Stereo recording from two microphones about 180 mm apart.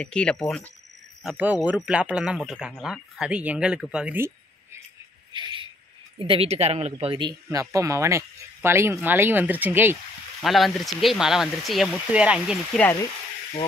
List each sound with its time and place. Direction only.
0.0 s speech: 5° left (ahead or behind)
1.2 s speech: 10° right (ahead or behind)
5.3 s a sound: 25° right (ahead or behind)
6.1 s speech: 30° right (ahead or behind); by 9.9 s 10° right (ahead or behind)
10.4 s speech: centre (ahead or behind)